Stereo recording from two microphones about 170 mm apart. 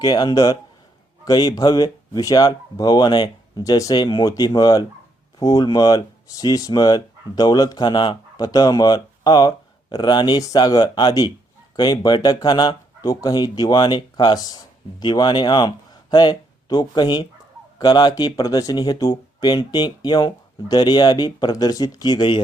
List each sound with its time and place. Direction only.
0.0 s speech: 25° left (ahead or behind)